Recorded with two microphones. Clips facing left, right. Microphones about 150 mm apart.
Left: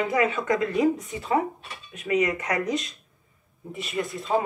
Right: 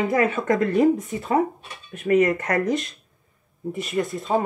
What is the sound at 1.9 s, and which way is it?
Speech, 50° right (ahead or behind).